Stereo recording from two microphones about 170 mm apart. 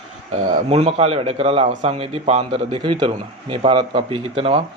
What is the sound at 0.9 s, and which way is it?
A man's voice, 40° right (ahead or behind).